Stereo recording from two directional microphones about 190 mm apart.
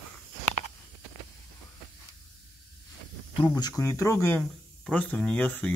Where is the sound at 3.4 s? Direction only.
20° left (ahead or behind).